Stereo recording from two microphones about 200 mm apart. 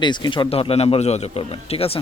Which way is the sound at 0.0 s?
20° left (ahead or behind).